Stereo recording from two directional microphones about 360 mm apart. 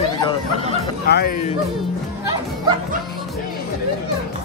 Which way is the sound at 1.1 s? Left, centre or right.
Left.